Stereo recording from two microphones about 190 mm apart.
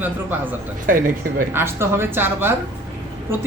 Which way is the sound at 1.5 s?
10° right (ahead or behind).